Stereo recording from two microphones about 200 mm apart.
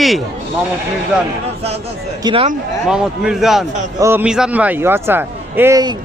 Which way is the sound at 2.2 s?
25° right (ahead or behind).